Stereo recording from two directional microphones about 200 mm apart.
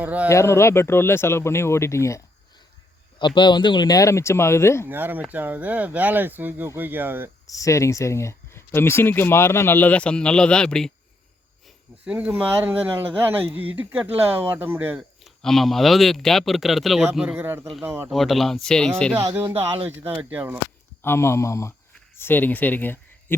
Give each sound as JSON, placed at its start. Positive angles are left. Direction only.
{"t": 0.0, "sound": "speech", "side_deg": -5}
{"t": 0.3, "sound": "speech", "side_deg": 15}
{"t": 4.9, "sound": "speech", "side_deg": -10}
{"t": 7.4, "sound": "speech", "side_deg": 15}
{"t": 12.0, "sound": "speech", "side_deg": -5}
{"t": 18.1, "sound": "speech", "side_deg": 0}
{"t": 19.1, "sound": "speech", "side_deg": -10}
{"t": 21.0, "sound": "speech", "side_deg": 10}